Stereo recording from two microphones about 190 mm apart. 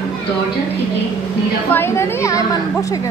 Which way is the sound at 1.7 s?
15° left (ahead or behind).